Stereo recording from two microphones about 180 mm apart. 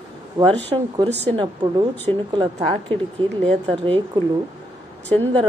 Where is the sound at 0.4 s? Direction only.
25° right (ahead or behind).